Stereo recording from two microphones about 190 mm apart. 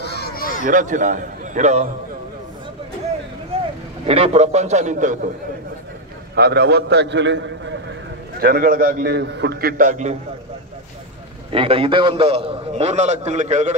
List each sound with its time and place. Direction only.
0.0 s a sound: 55° left (ahead or behind)
0.7 s a man's voice: 40° right (ahead or behind)
4.0 s a man's voice: 30° right (ahead or behind)
6.3 s a man's voice: 60° right (ahead or behind)
8.4 s a man's voice: 50° right (ahead or behind)
11.5 s a man's voice: 30° right (ahead or behind)